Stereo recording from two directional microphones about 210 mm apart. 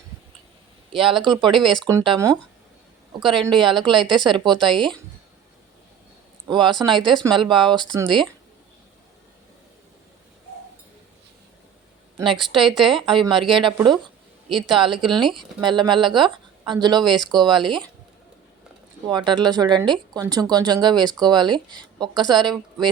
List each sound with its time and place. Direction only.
0.9 s speech: 25° right (ahead or behind)
3.4 s speech: 20° right (ahead or behind)
6.5 s speech: 20° right (ahead or behind)
12.1 s a woman's voice: 25° right (ahead or behind)
12.5 s speech: centre (ahead or behind)
12.9 s speech: 25° right (ahead or behind)
19.0 s speech: 20° right (ahead or behind)